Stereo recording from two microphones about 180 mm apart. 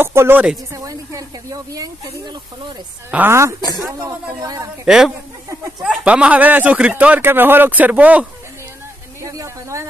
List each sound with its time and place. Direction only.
0.0 s speech: 15° right (ahead or behind)
3.1 s speech: 10° right (ahead or behind)
4.8 s a woman's voice: centre (ahead or behind)